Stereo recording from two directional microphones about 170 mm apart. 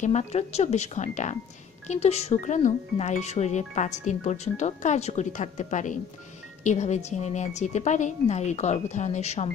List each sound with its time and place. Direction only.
0.0 s a woman's voice: 45° left (ahead or behind)